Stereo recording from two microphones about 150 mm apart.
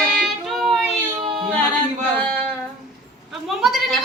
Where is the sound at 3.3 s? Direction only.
Centre (ahead or behind).